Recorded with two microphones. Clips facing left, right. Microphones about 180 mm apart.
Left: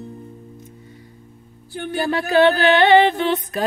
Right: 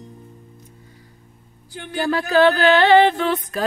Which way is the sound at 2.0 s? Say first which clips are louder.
Even; 20° left (ahead or behind).